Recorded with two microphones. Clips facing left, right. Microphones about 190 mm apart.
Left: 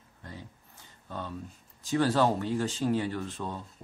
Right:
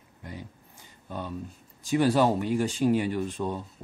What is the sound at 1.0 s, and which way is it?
Speech, 15° right (ahead or behind).